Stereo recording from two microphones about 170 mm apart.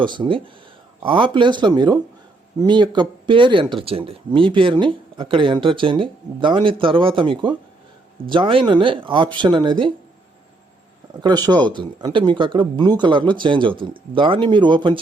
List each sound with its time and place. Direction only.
0.0 s speech: 30° right (ahead or behind)
11.2 s speech: 25° right (ahead or behind)